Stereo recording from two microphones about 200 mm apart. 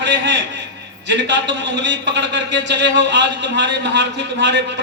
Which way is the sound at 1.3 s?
65° right (ahead or behind).